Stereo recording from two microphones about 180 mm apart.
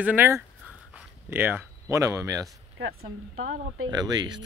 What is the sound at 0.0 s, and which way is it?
Speech, 10° right (ahead or behind).